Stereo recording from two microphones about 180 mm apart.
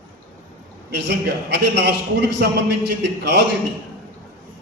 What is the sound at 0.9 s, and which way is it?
A man's voice, 75° right (ahead or behind).